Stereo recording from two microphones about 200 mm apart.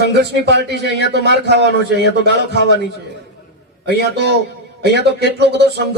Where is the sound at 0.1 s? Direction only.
55° right (ahead or behind).